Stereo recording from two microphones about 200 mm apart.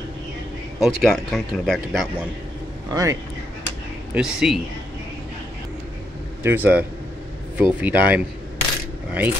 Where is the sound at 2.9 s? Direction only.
15° right (ahead or behind).